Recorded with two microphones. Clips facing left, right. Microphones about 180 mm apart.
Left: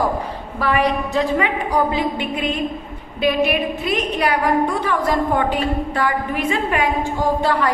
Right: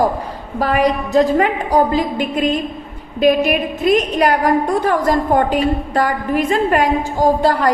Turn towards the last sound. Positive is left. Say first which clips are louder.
# right 4 dB
turn(degrees=-40)  # may be behind; listen again after turning